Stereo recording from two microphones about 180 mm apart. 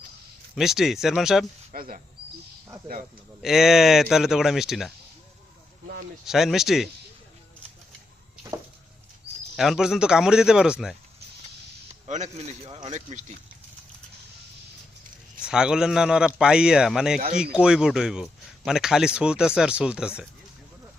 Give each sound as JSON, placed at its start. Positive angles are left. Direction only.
{"t": 0.5, "sound": "speech", "side_deg": 0}
{"t": 1.7, "sound": "speech", "side_deg": -55}
{"t": 3.4, "sound": "speech", "side_deg": 0}
{"t": 6.2, "sound": "speech", "side_deg": 0}
{"t": 9.6, "sound": "speech", "side_deg": 0}
{"t": 12.0, "sound": "speech", "side_deg": -40}
{"t": 15.4, "sound": "speech", "side_deg": -5}